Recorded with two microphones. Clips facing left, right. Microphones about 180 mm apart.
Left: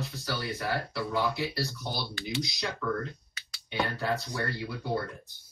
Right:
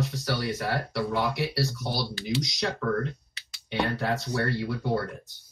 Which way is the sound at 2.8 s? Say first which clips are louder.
Right 3 dB; 55° right (ahead or behind).